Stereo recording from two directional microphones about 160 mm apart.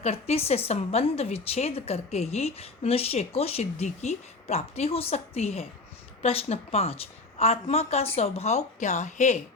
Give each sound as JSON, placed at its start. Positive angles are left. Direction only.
{"t": 0.0, "sound": "a woman's voice", "side_deg": 40}